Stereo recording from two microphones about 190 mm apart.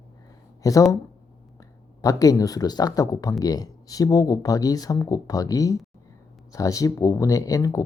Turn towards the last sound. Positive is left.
turn(degrees=15)  # may be behind; listen again after turning